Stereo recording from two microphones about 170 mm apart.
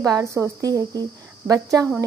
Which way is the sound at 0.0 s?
20° right (ahead or behind).